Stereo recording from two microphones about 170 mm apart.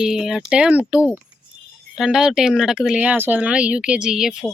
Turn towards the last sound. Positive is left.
turn(degrees=-5)  # may be behind; listen again after turning